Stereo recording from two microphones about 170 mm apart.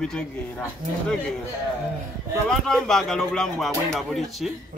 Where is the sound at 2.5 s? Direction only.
5° left (ahead or behind).